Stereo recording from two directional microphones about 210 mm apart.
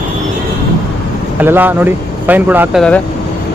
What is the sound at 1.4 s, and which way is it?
Speech, 10° right (ahead or behind).